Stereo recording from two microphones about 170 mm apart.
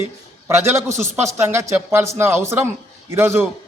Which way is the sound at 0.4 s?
15° right (ahead or behind).